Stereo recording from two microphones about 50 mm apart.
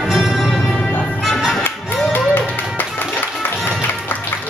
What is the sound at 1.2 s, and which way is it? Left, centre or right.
Music, centre.